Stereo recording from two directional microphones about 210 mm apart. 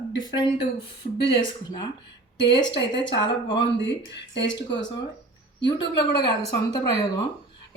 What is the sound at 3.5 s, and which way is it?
Speech, 55° left (ahead or behind).